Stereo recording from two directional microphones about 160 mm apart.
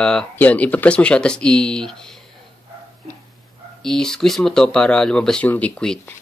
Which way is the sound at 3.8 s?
5° left (ahead or behind).